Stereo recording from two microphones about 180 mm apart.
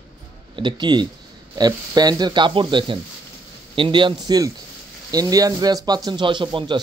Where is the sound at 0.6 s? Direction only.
25° right (ahead or behind).